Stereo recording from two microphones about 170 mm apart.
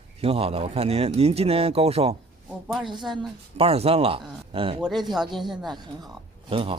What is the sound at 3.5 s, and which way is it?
Speech, 35° right (ahead or behind).